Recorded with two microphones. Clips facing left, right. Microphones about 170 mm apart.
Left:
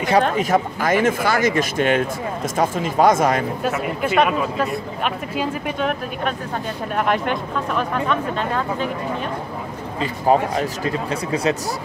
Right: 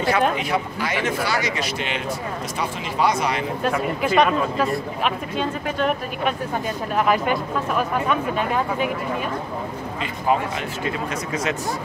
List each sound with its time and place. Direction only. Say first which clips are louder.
0.4 s speech: left 5 dB; 45° left (ahead or behind)
3.6 s speech: even; 5° left (ahead or behind); by 8.9 s 10° right (ahead or behind)
9.9 s speech: left 5 dB; 35° left (ahead or behind)